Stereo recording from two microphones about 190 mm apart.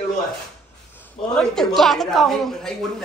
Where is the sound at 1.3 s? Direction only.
5° left (ahead or behind).